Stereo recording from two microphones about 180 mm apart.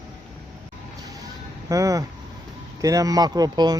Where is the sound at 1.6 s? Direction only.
20° right (ahead or behind).